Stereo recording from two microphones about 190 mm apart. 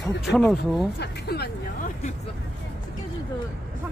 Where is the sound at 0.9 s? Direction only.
60° left (ahead or behind).